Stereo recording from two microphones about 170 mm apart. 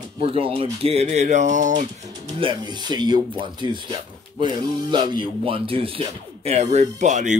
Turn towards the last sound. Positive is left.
turn(degrees=-45)  # may be behind; listen again after turning